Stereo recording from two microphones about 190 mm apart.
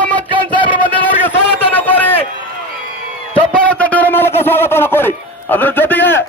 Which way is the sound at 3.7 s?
10° left (ahead or behind).